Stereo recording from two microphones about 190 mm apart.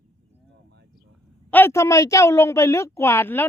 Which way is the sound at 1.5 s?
10° left (ahead or behind).